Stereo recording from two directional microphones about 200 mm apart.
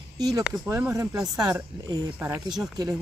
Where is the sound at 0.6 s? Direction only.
15° right (ahead or behind).